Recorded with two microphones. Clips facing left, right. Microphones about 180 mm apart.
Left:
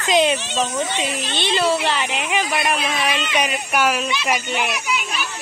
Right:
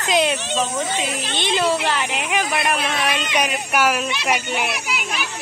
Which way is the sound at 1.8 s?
10° right (ahead or behind).